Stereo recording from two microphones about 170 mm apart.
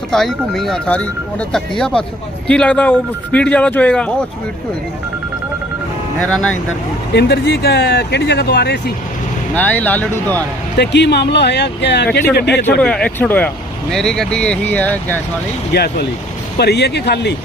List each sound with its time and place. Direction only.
0.1 s speech: centre (ahead or behind)
6.1 s speech: 5° left (ahead or behind)
7.1 s speech: 80° left
9.6 s speech: 10° left (ahead or behind)
10.8 s speech: 85° left
12.8 s speech: 5° left (ahead or behind)
15.7 s speech: 70° left (ahead or behind)